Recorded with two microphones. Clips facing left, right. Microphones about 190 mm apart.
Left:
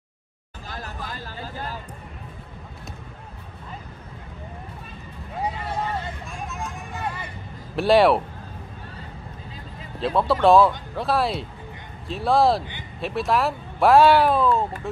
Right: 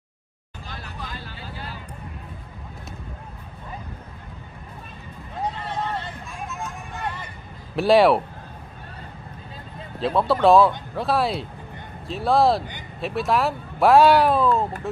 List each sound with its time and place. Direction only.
0.7 s vehicle: 45° left (ahead or behind)
5.4 s vehicle: 5° left (ahead or behind)
7.7 s speech: centre (ahead or behind)
9.9 s speech: centre (ahead or behind)